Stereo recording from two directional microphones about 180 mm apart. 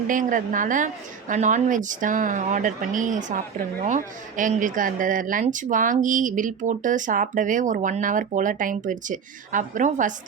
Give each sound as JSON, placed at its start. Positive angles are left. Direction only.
{"t": 0.1, "sound": "speech", "side_deg": -45}